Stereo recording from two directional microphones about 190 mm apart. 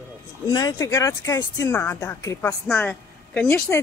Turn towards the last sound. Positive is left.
turn(degrees=10)  # may be behind; listen again after turning